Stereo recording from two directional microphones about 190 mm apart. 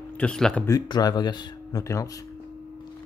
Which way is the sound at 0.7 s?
20° left (ahead or behind).